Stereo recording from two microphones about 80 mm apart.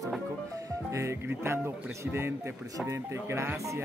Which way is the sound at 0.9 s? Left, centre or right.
Right.